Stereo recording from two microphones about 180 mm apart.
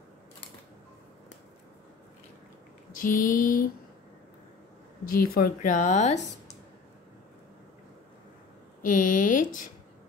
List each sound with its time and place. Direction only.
2.9 s a woman's voice: 50° left (ahead or behind)
5.0 s a woman's voice: 55° left (ahead or behind)
8.8 s a woman's voice: 45° left (ahead or behind)